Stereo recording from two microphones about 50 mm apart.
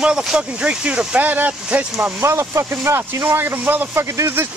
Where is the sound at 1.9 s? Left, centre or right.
Right.